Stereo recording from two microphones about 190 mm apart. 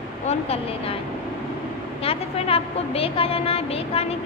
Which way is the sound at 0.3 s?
30° left (ahead or behind).